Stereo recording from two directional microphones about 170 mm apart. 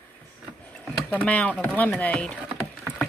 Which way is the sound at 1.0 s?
10° left (ahead or behind).